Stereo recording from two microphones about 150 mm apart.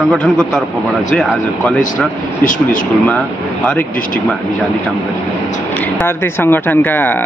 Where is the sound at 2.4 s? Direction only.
65° left (ahead or behind).